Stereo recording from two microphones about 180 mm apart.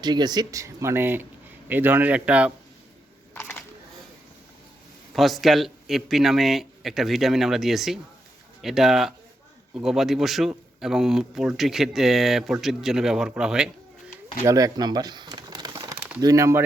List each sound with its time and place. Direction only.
0.0 s speech: 25° right (ahead or behind); by 2.5 s 5° right (ahead or behind)
3.3 s a sound: 10° left (ahead or behind)
5.1 s speech: centre (ahead or behind)
14.4 s crumpling: 20° right (ahead or behind)